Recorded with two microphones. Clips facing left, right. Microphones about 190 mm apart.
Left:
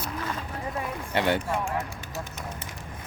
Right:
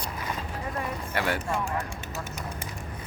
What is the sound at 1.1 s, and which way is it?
Speech, 25° left (ahead or behind).